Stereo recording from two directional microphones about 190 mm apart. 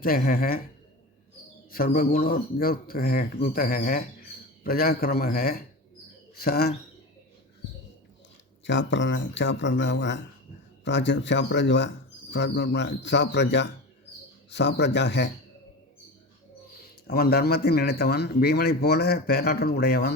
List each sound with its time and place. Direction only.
0.0 s speech: 50° left (ahead or behind)
2.0 s speech: 50° left (ahead or behind)
8.6 s speech: 75° left (ahead or behind)
17.1 s speech: 55° left (ahead or behind)